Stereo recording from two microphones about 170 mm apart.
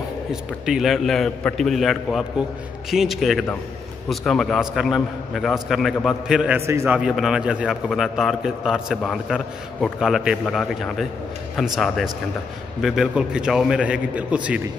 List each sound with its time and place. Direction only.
0.3 s a man's voice: 5° right (ahead or behind)
6.6 s a man's voice: 15° right (ahead or behind)
7.0 s a man's voice: 5° right (ahead or behind)